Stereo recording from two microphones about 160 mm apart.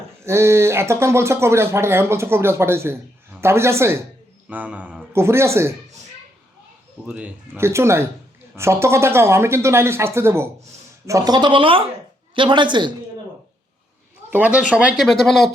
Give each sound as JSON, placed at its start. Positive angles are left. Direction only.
{"t": 0.3, "sound": "speech", "side_deg": -15}
{"t": 7.1, "sound": "speech", "side_deg": -10}
{"t": 14.3, "sound": "speech", "side_deg": -10}